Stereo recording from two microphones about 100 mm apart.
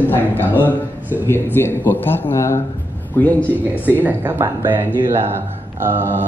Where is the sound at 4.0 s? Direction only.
20° right (ahead or behind).